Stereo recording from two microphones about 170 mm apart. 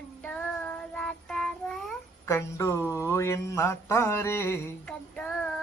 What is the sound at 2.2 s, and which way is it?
Mantra, 15° left (ahead or behind).